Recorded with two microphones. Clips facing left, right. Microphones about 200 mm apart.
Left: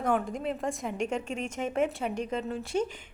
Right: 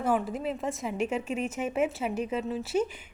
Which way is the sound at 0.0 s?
5° right (ahead or behind).